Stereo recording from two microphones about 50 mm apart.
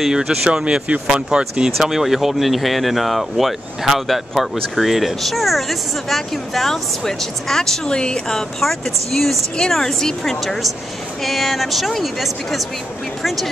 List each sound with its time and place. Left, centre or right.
0.0 s speech: centre
0.5 s speech: centre